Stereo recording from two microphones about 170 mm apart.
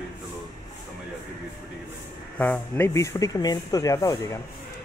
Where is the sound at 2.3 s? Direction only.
10° left (ahead or behind).